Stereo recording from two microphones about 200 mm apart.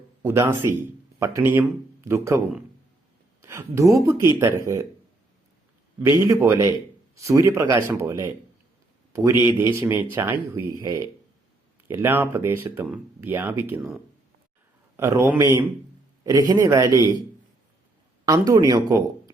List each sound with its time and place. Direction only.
0.2 s speech: 10° right (ahead or behind)
3.4 s speech: 15° right (ahead or behind)
6.1 s a man's voice: 10° right (ahead or behind)
18.3 s speech: 15° right (ahead or behind)